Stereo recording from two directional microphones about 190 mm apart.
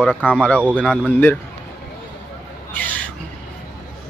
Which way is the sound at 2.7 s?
10° left (ahead or behind).